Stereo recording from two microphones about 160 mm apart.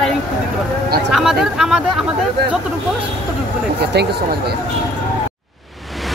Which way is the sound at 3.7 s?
90° right.